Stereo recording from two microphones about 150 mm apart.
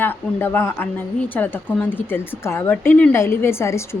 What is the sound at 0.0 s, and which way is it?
A woman's voice, 15° left (ahead or behind).